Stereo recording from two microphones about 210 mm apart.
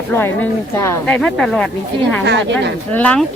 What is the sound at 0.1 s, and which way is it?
Speech, 10° left (ahead or behind).